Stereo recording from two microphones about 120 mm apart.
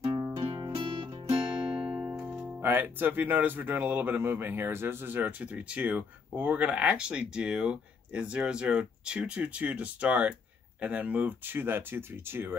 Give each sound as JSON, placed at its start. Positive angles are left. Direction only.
{"t": 0.5, "sound": "music", "side_deg": -40}
{"t": 2.0, "sound": "speech", "side_deg": -15}